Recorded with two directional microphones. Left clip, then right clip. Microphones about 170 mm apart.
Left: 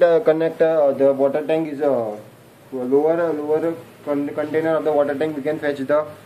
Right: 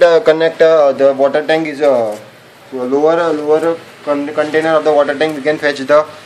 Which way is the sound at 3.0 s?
45° right (ahead or behind).